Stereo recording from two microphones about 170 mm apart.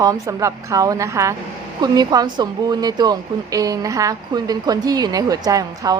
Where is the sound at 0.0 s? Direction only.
20° right (ahead or behind).